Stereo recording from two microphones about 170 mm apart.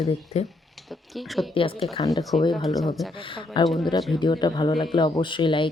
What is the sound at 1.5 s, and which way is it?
Speech, 30° left (ahead or behind).